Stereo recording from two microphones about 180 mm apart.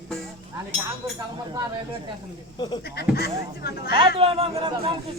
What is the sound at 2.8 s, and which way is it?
Speech, 60° left (ahead or behind).